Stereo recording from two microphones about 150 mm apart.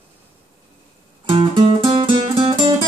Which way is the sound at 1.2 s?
35° right (ahead or behind).